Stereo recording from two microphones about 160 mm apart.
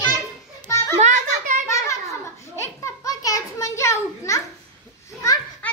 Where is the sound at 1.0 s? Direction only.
50° right (ahead or behind).